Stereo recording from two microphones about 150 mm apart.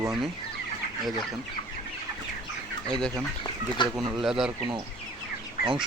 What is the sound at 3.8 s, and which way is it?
Speech, 30° left (ahead or behind).